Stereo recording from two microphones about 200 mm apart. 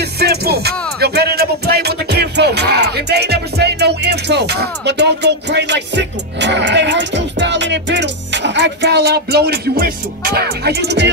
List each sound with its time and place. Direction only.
0.0 s music: 55° right (ahead or behind)